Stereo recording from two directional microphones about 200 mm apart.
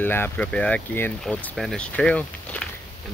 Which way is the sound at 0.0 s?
10° left (ahead or behind).